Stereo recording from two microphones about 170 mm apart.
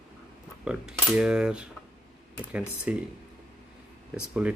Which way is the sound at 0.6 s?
5° right (ahead or behind).